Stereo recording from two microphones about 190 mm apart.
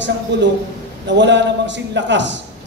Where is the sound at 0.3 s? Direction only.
70° right (ahead or behind).